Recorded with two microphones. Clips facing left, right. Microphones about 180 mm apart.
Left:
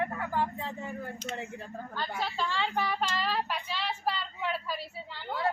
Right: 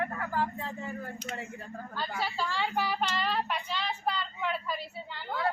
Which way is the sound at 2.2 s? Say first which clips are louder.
Even; 5° right (ahead or behind).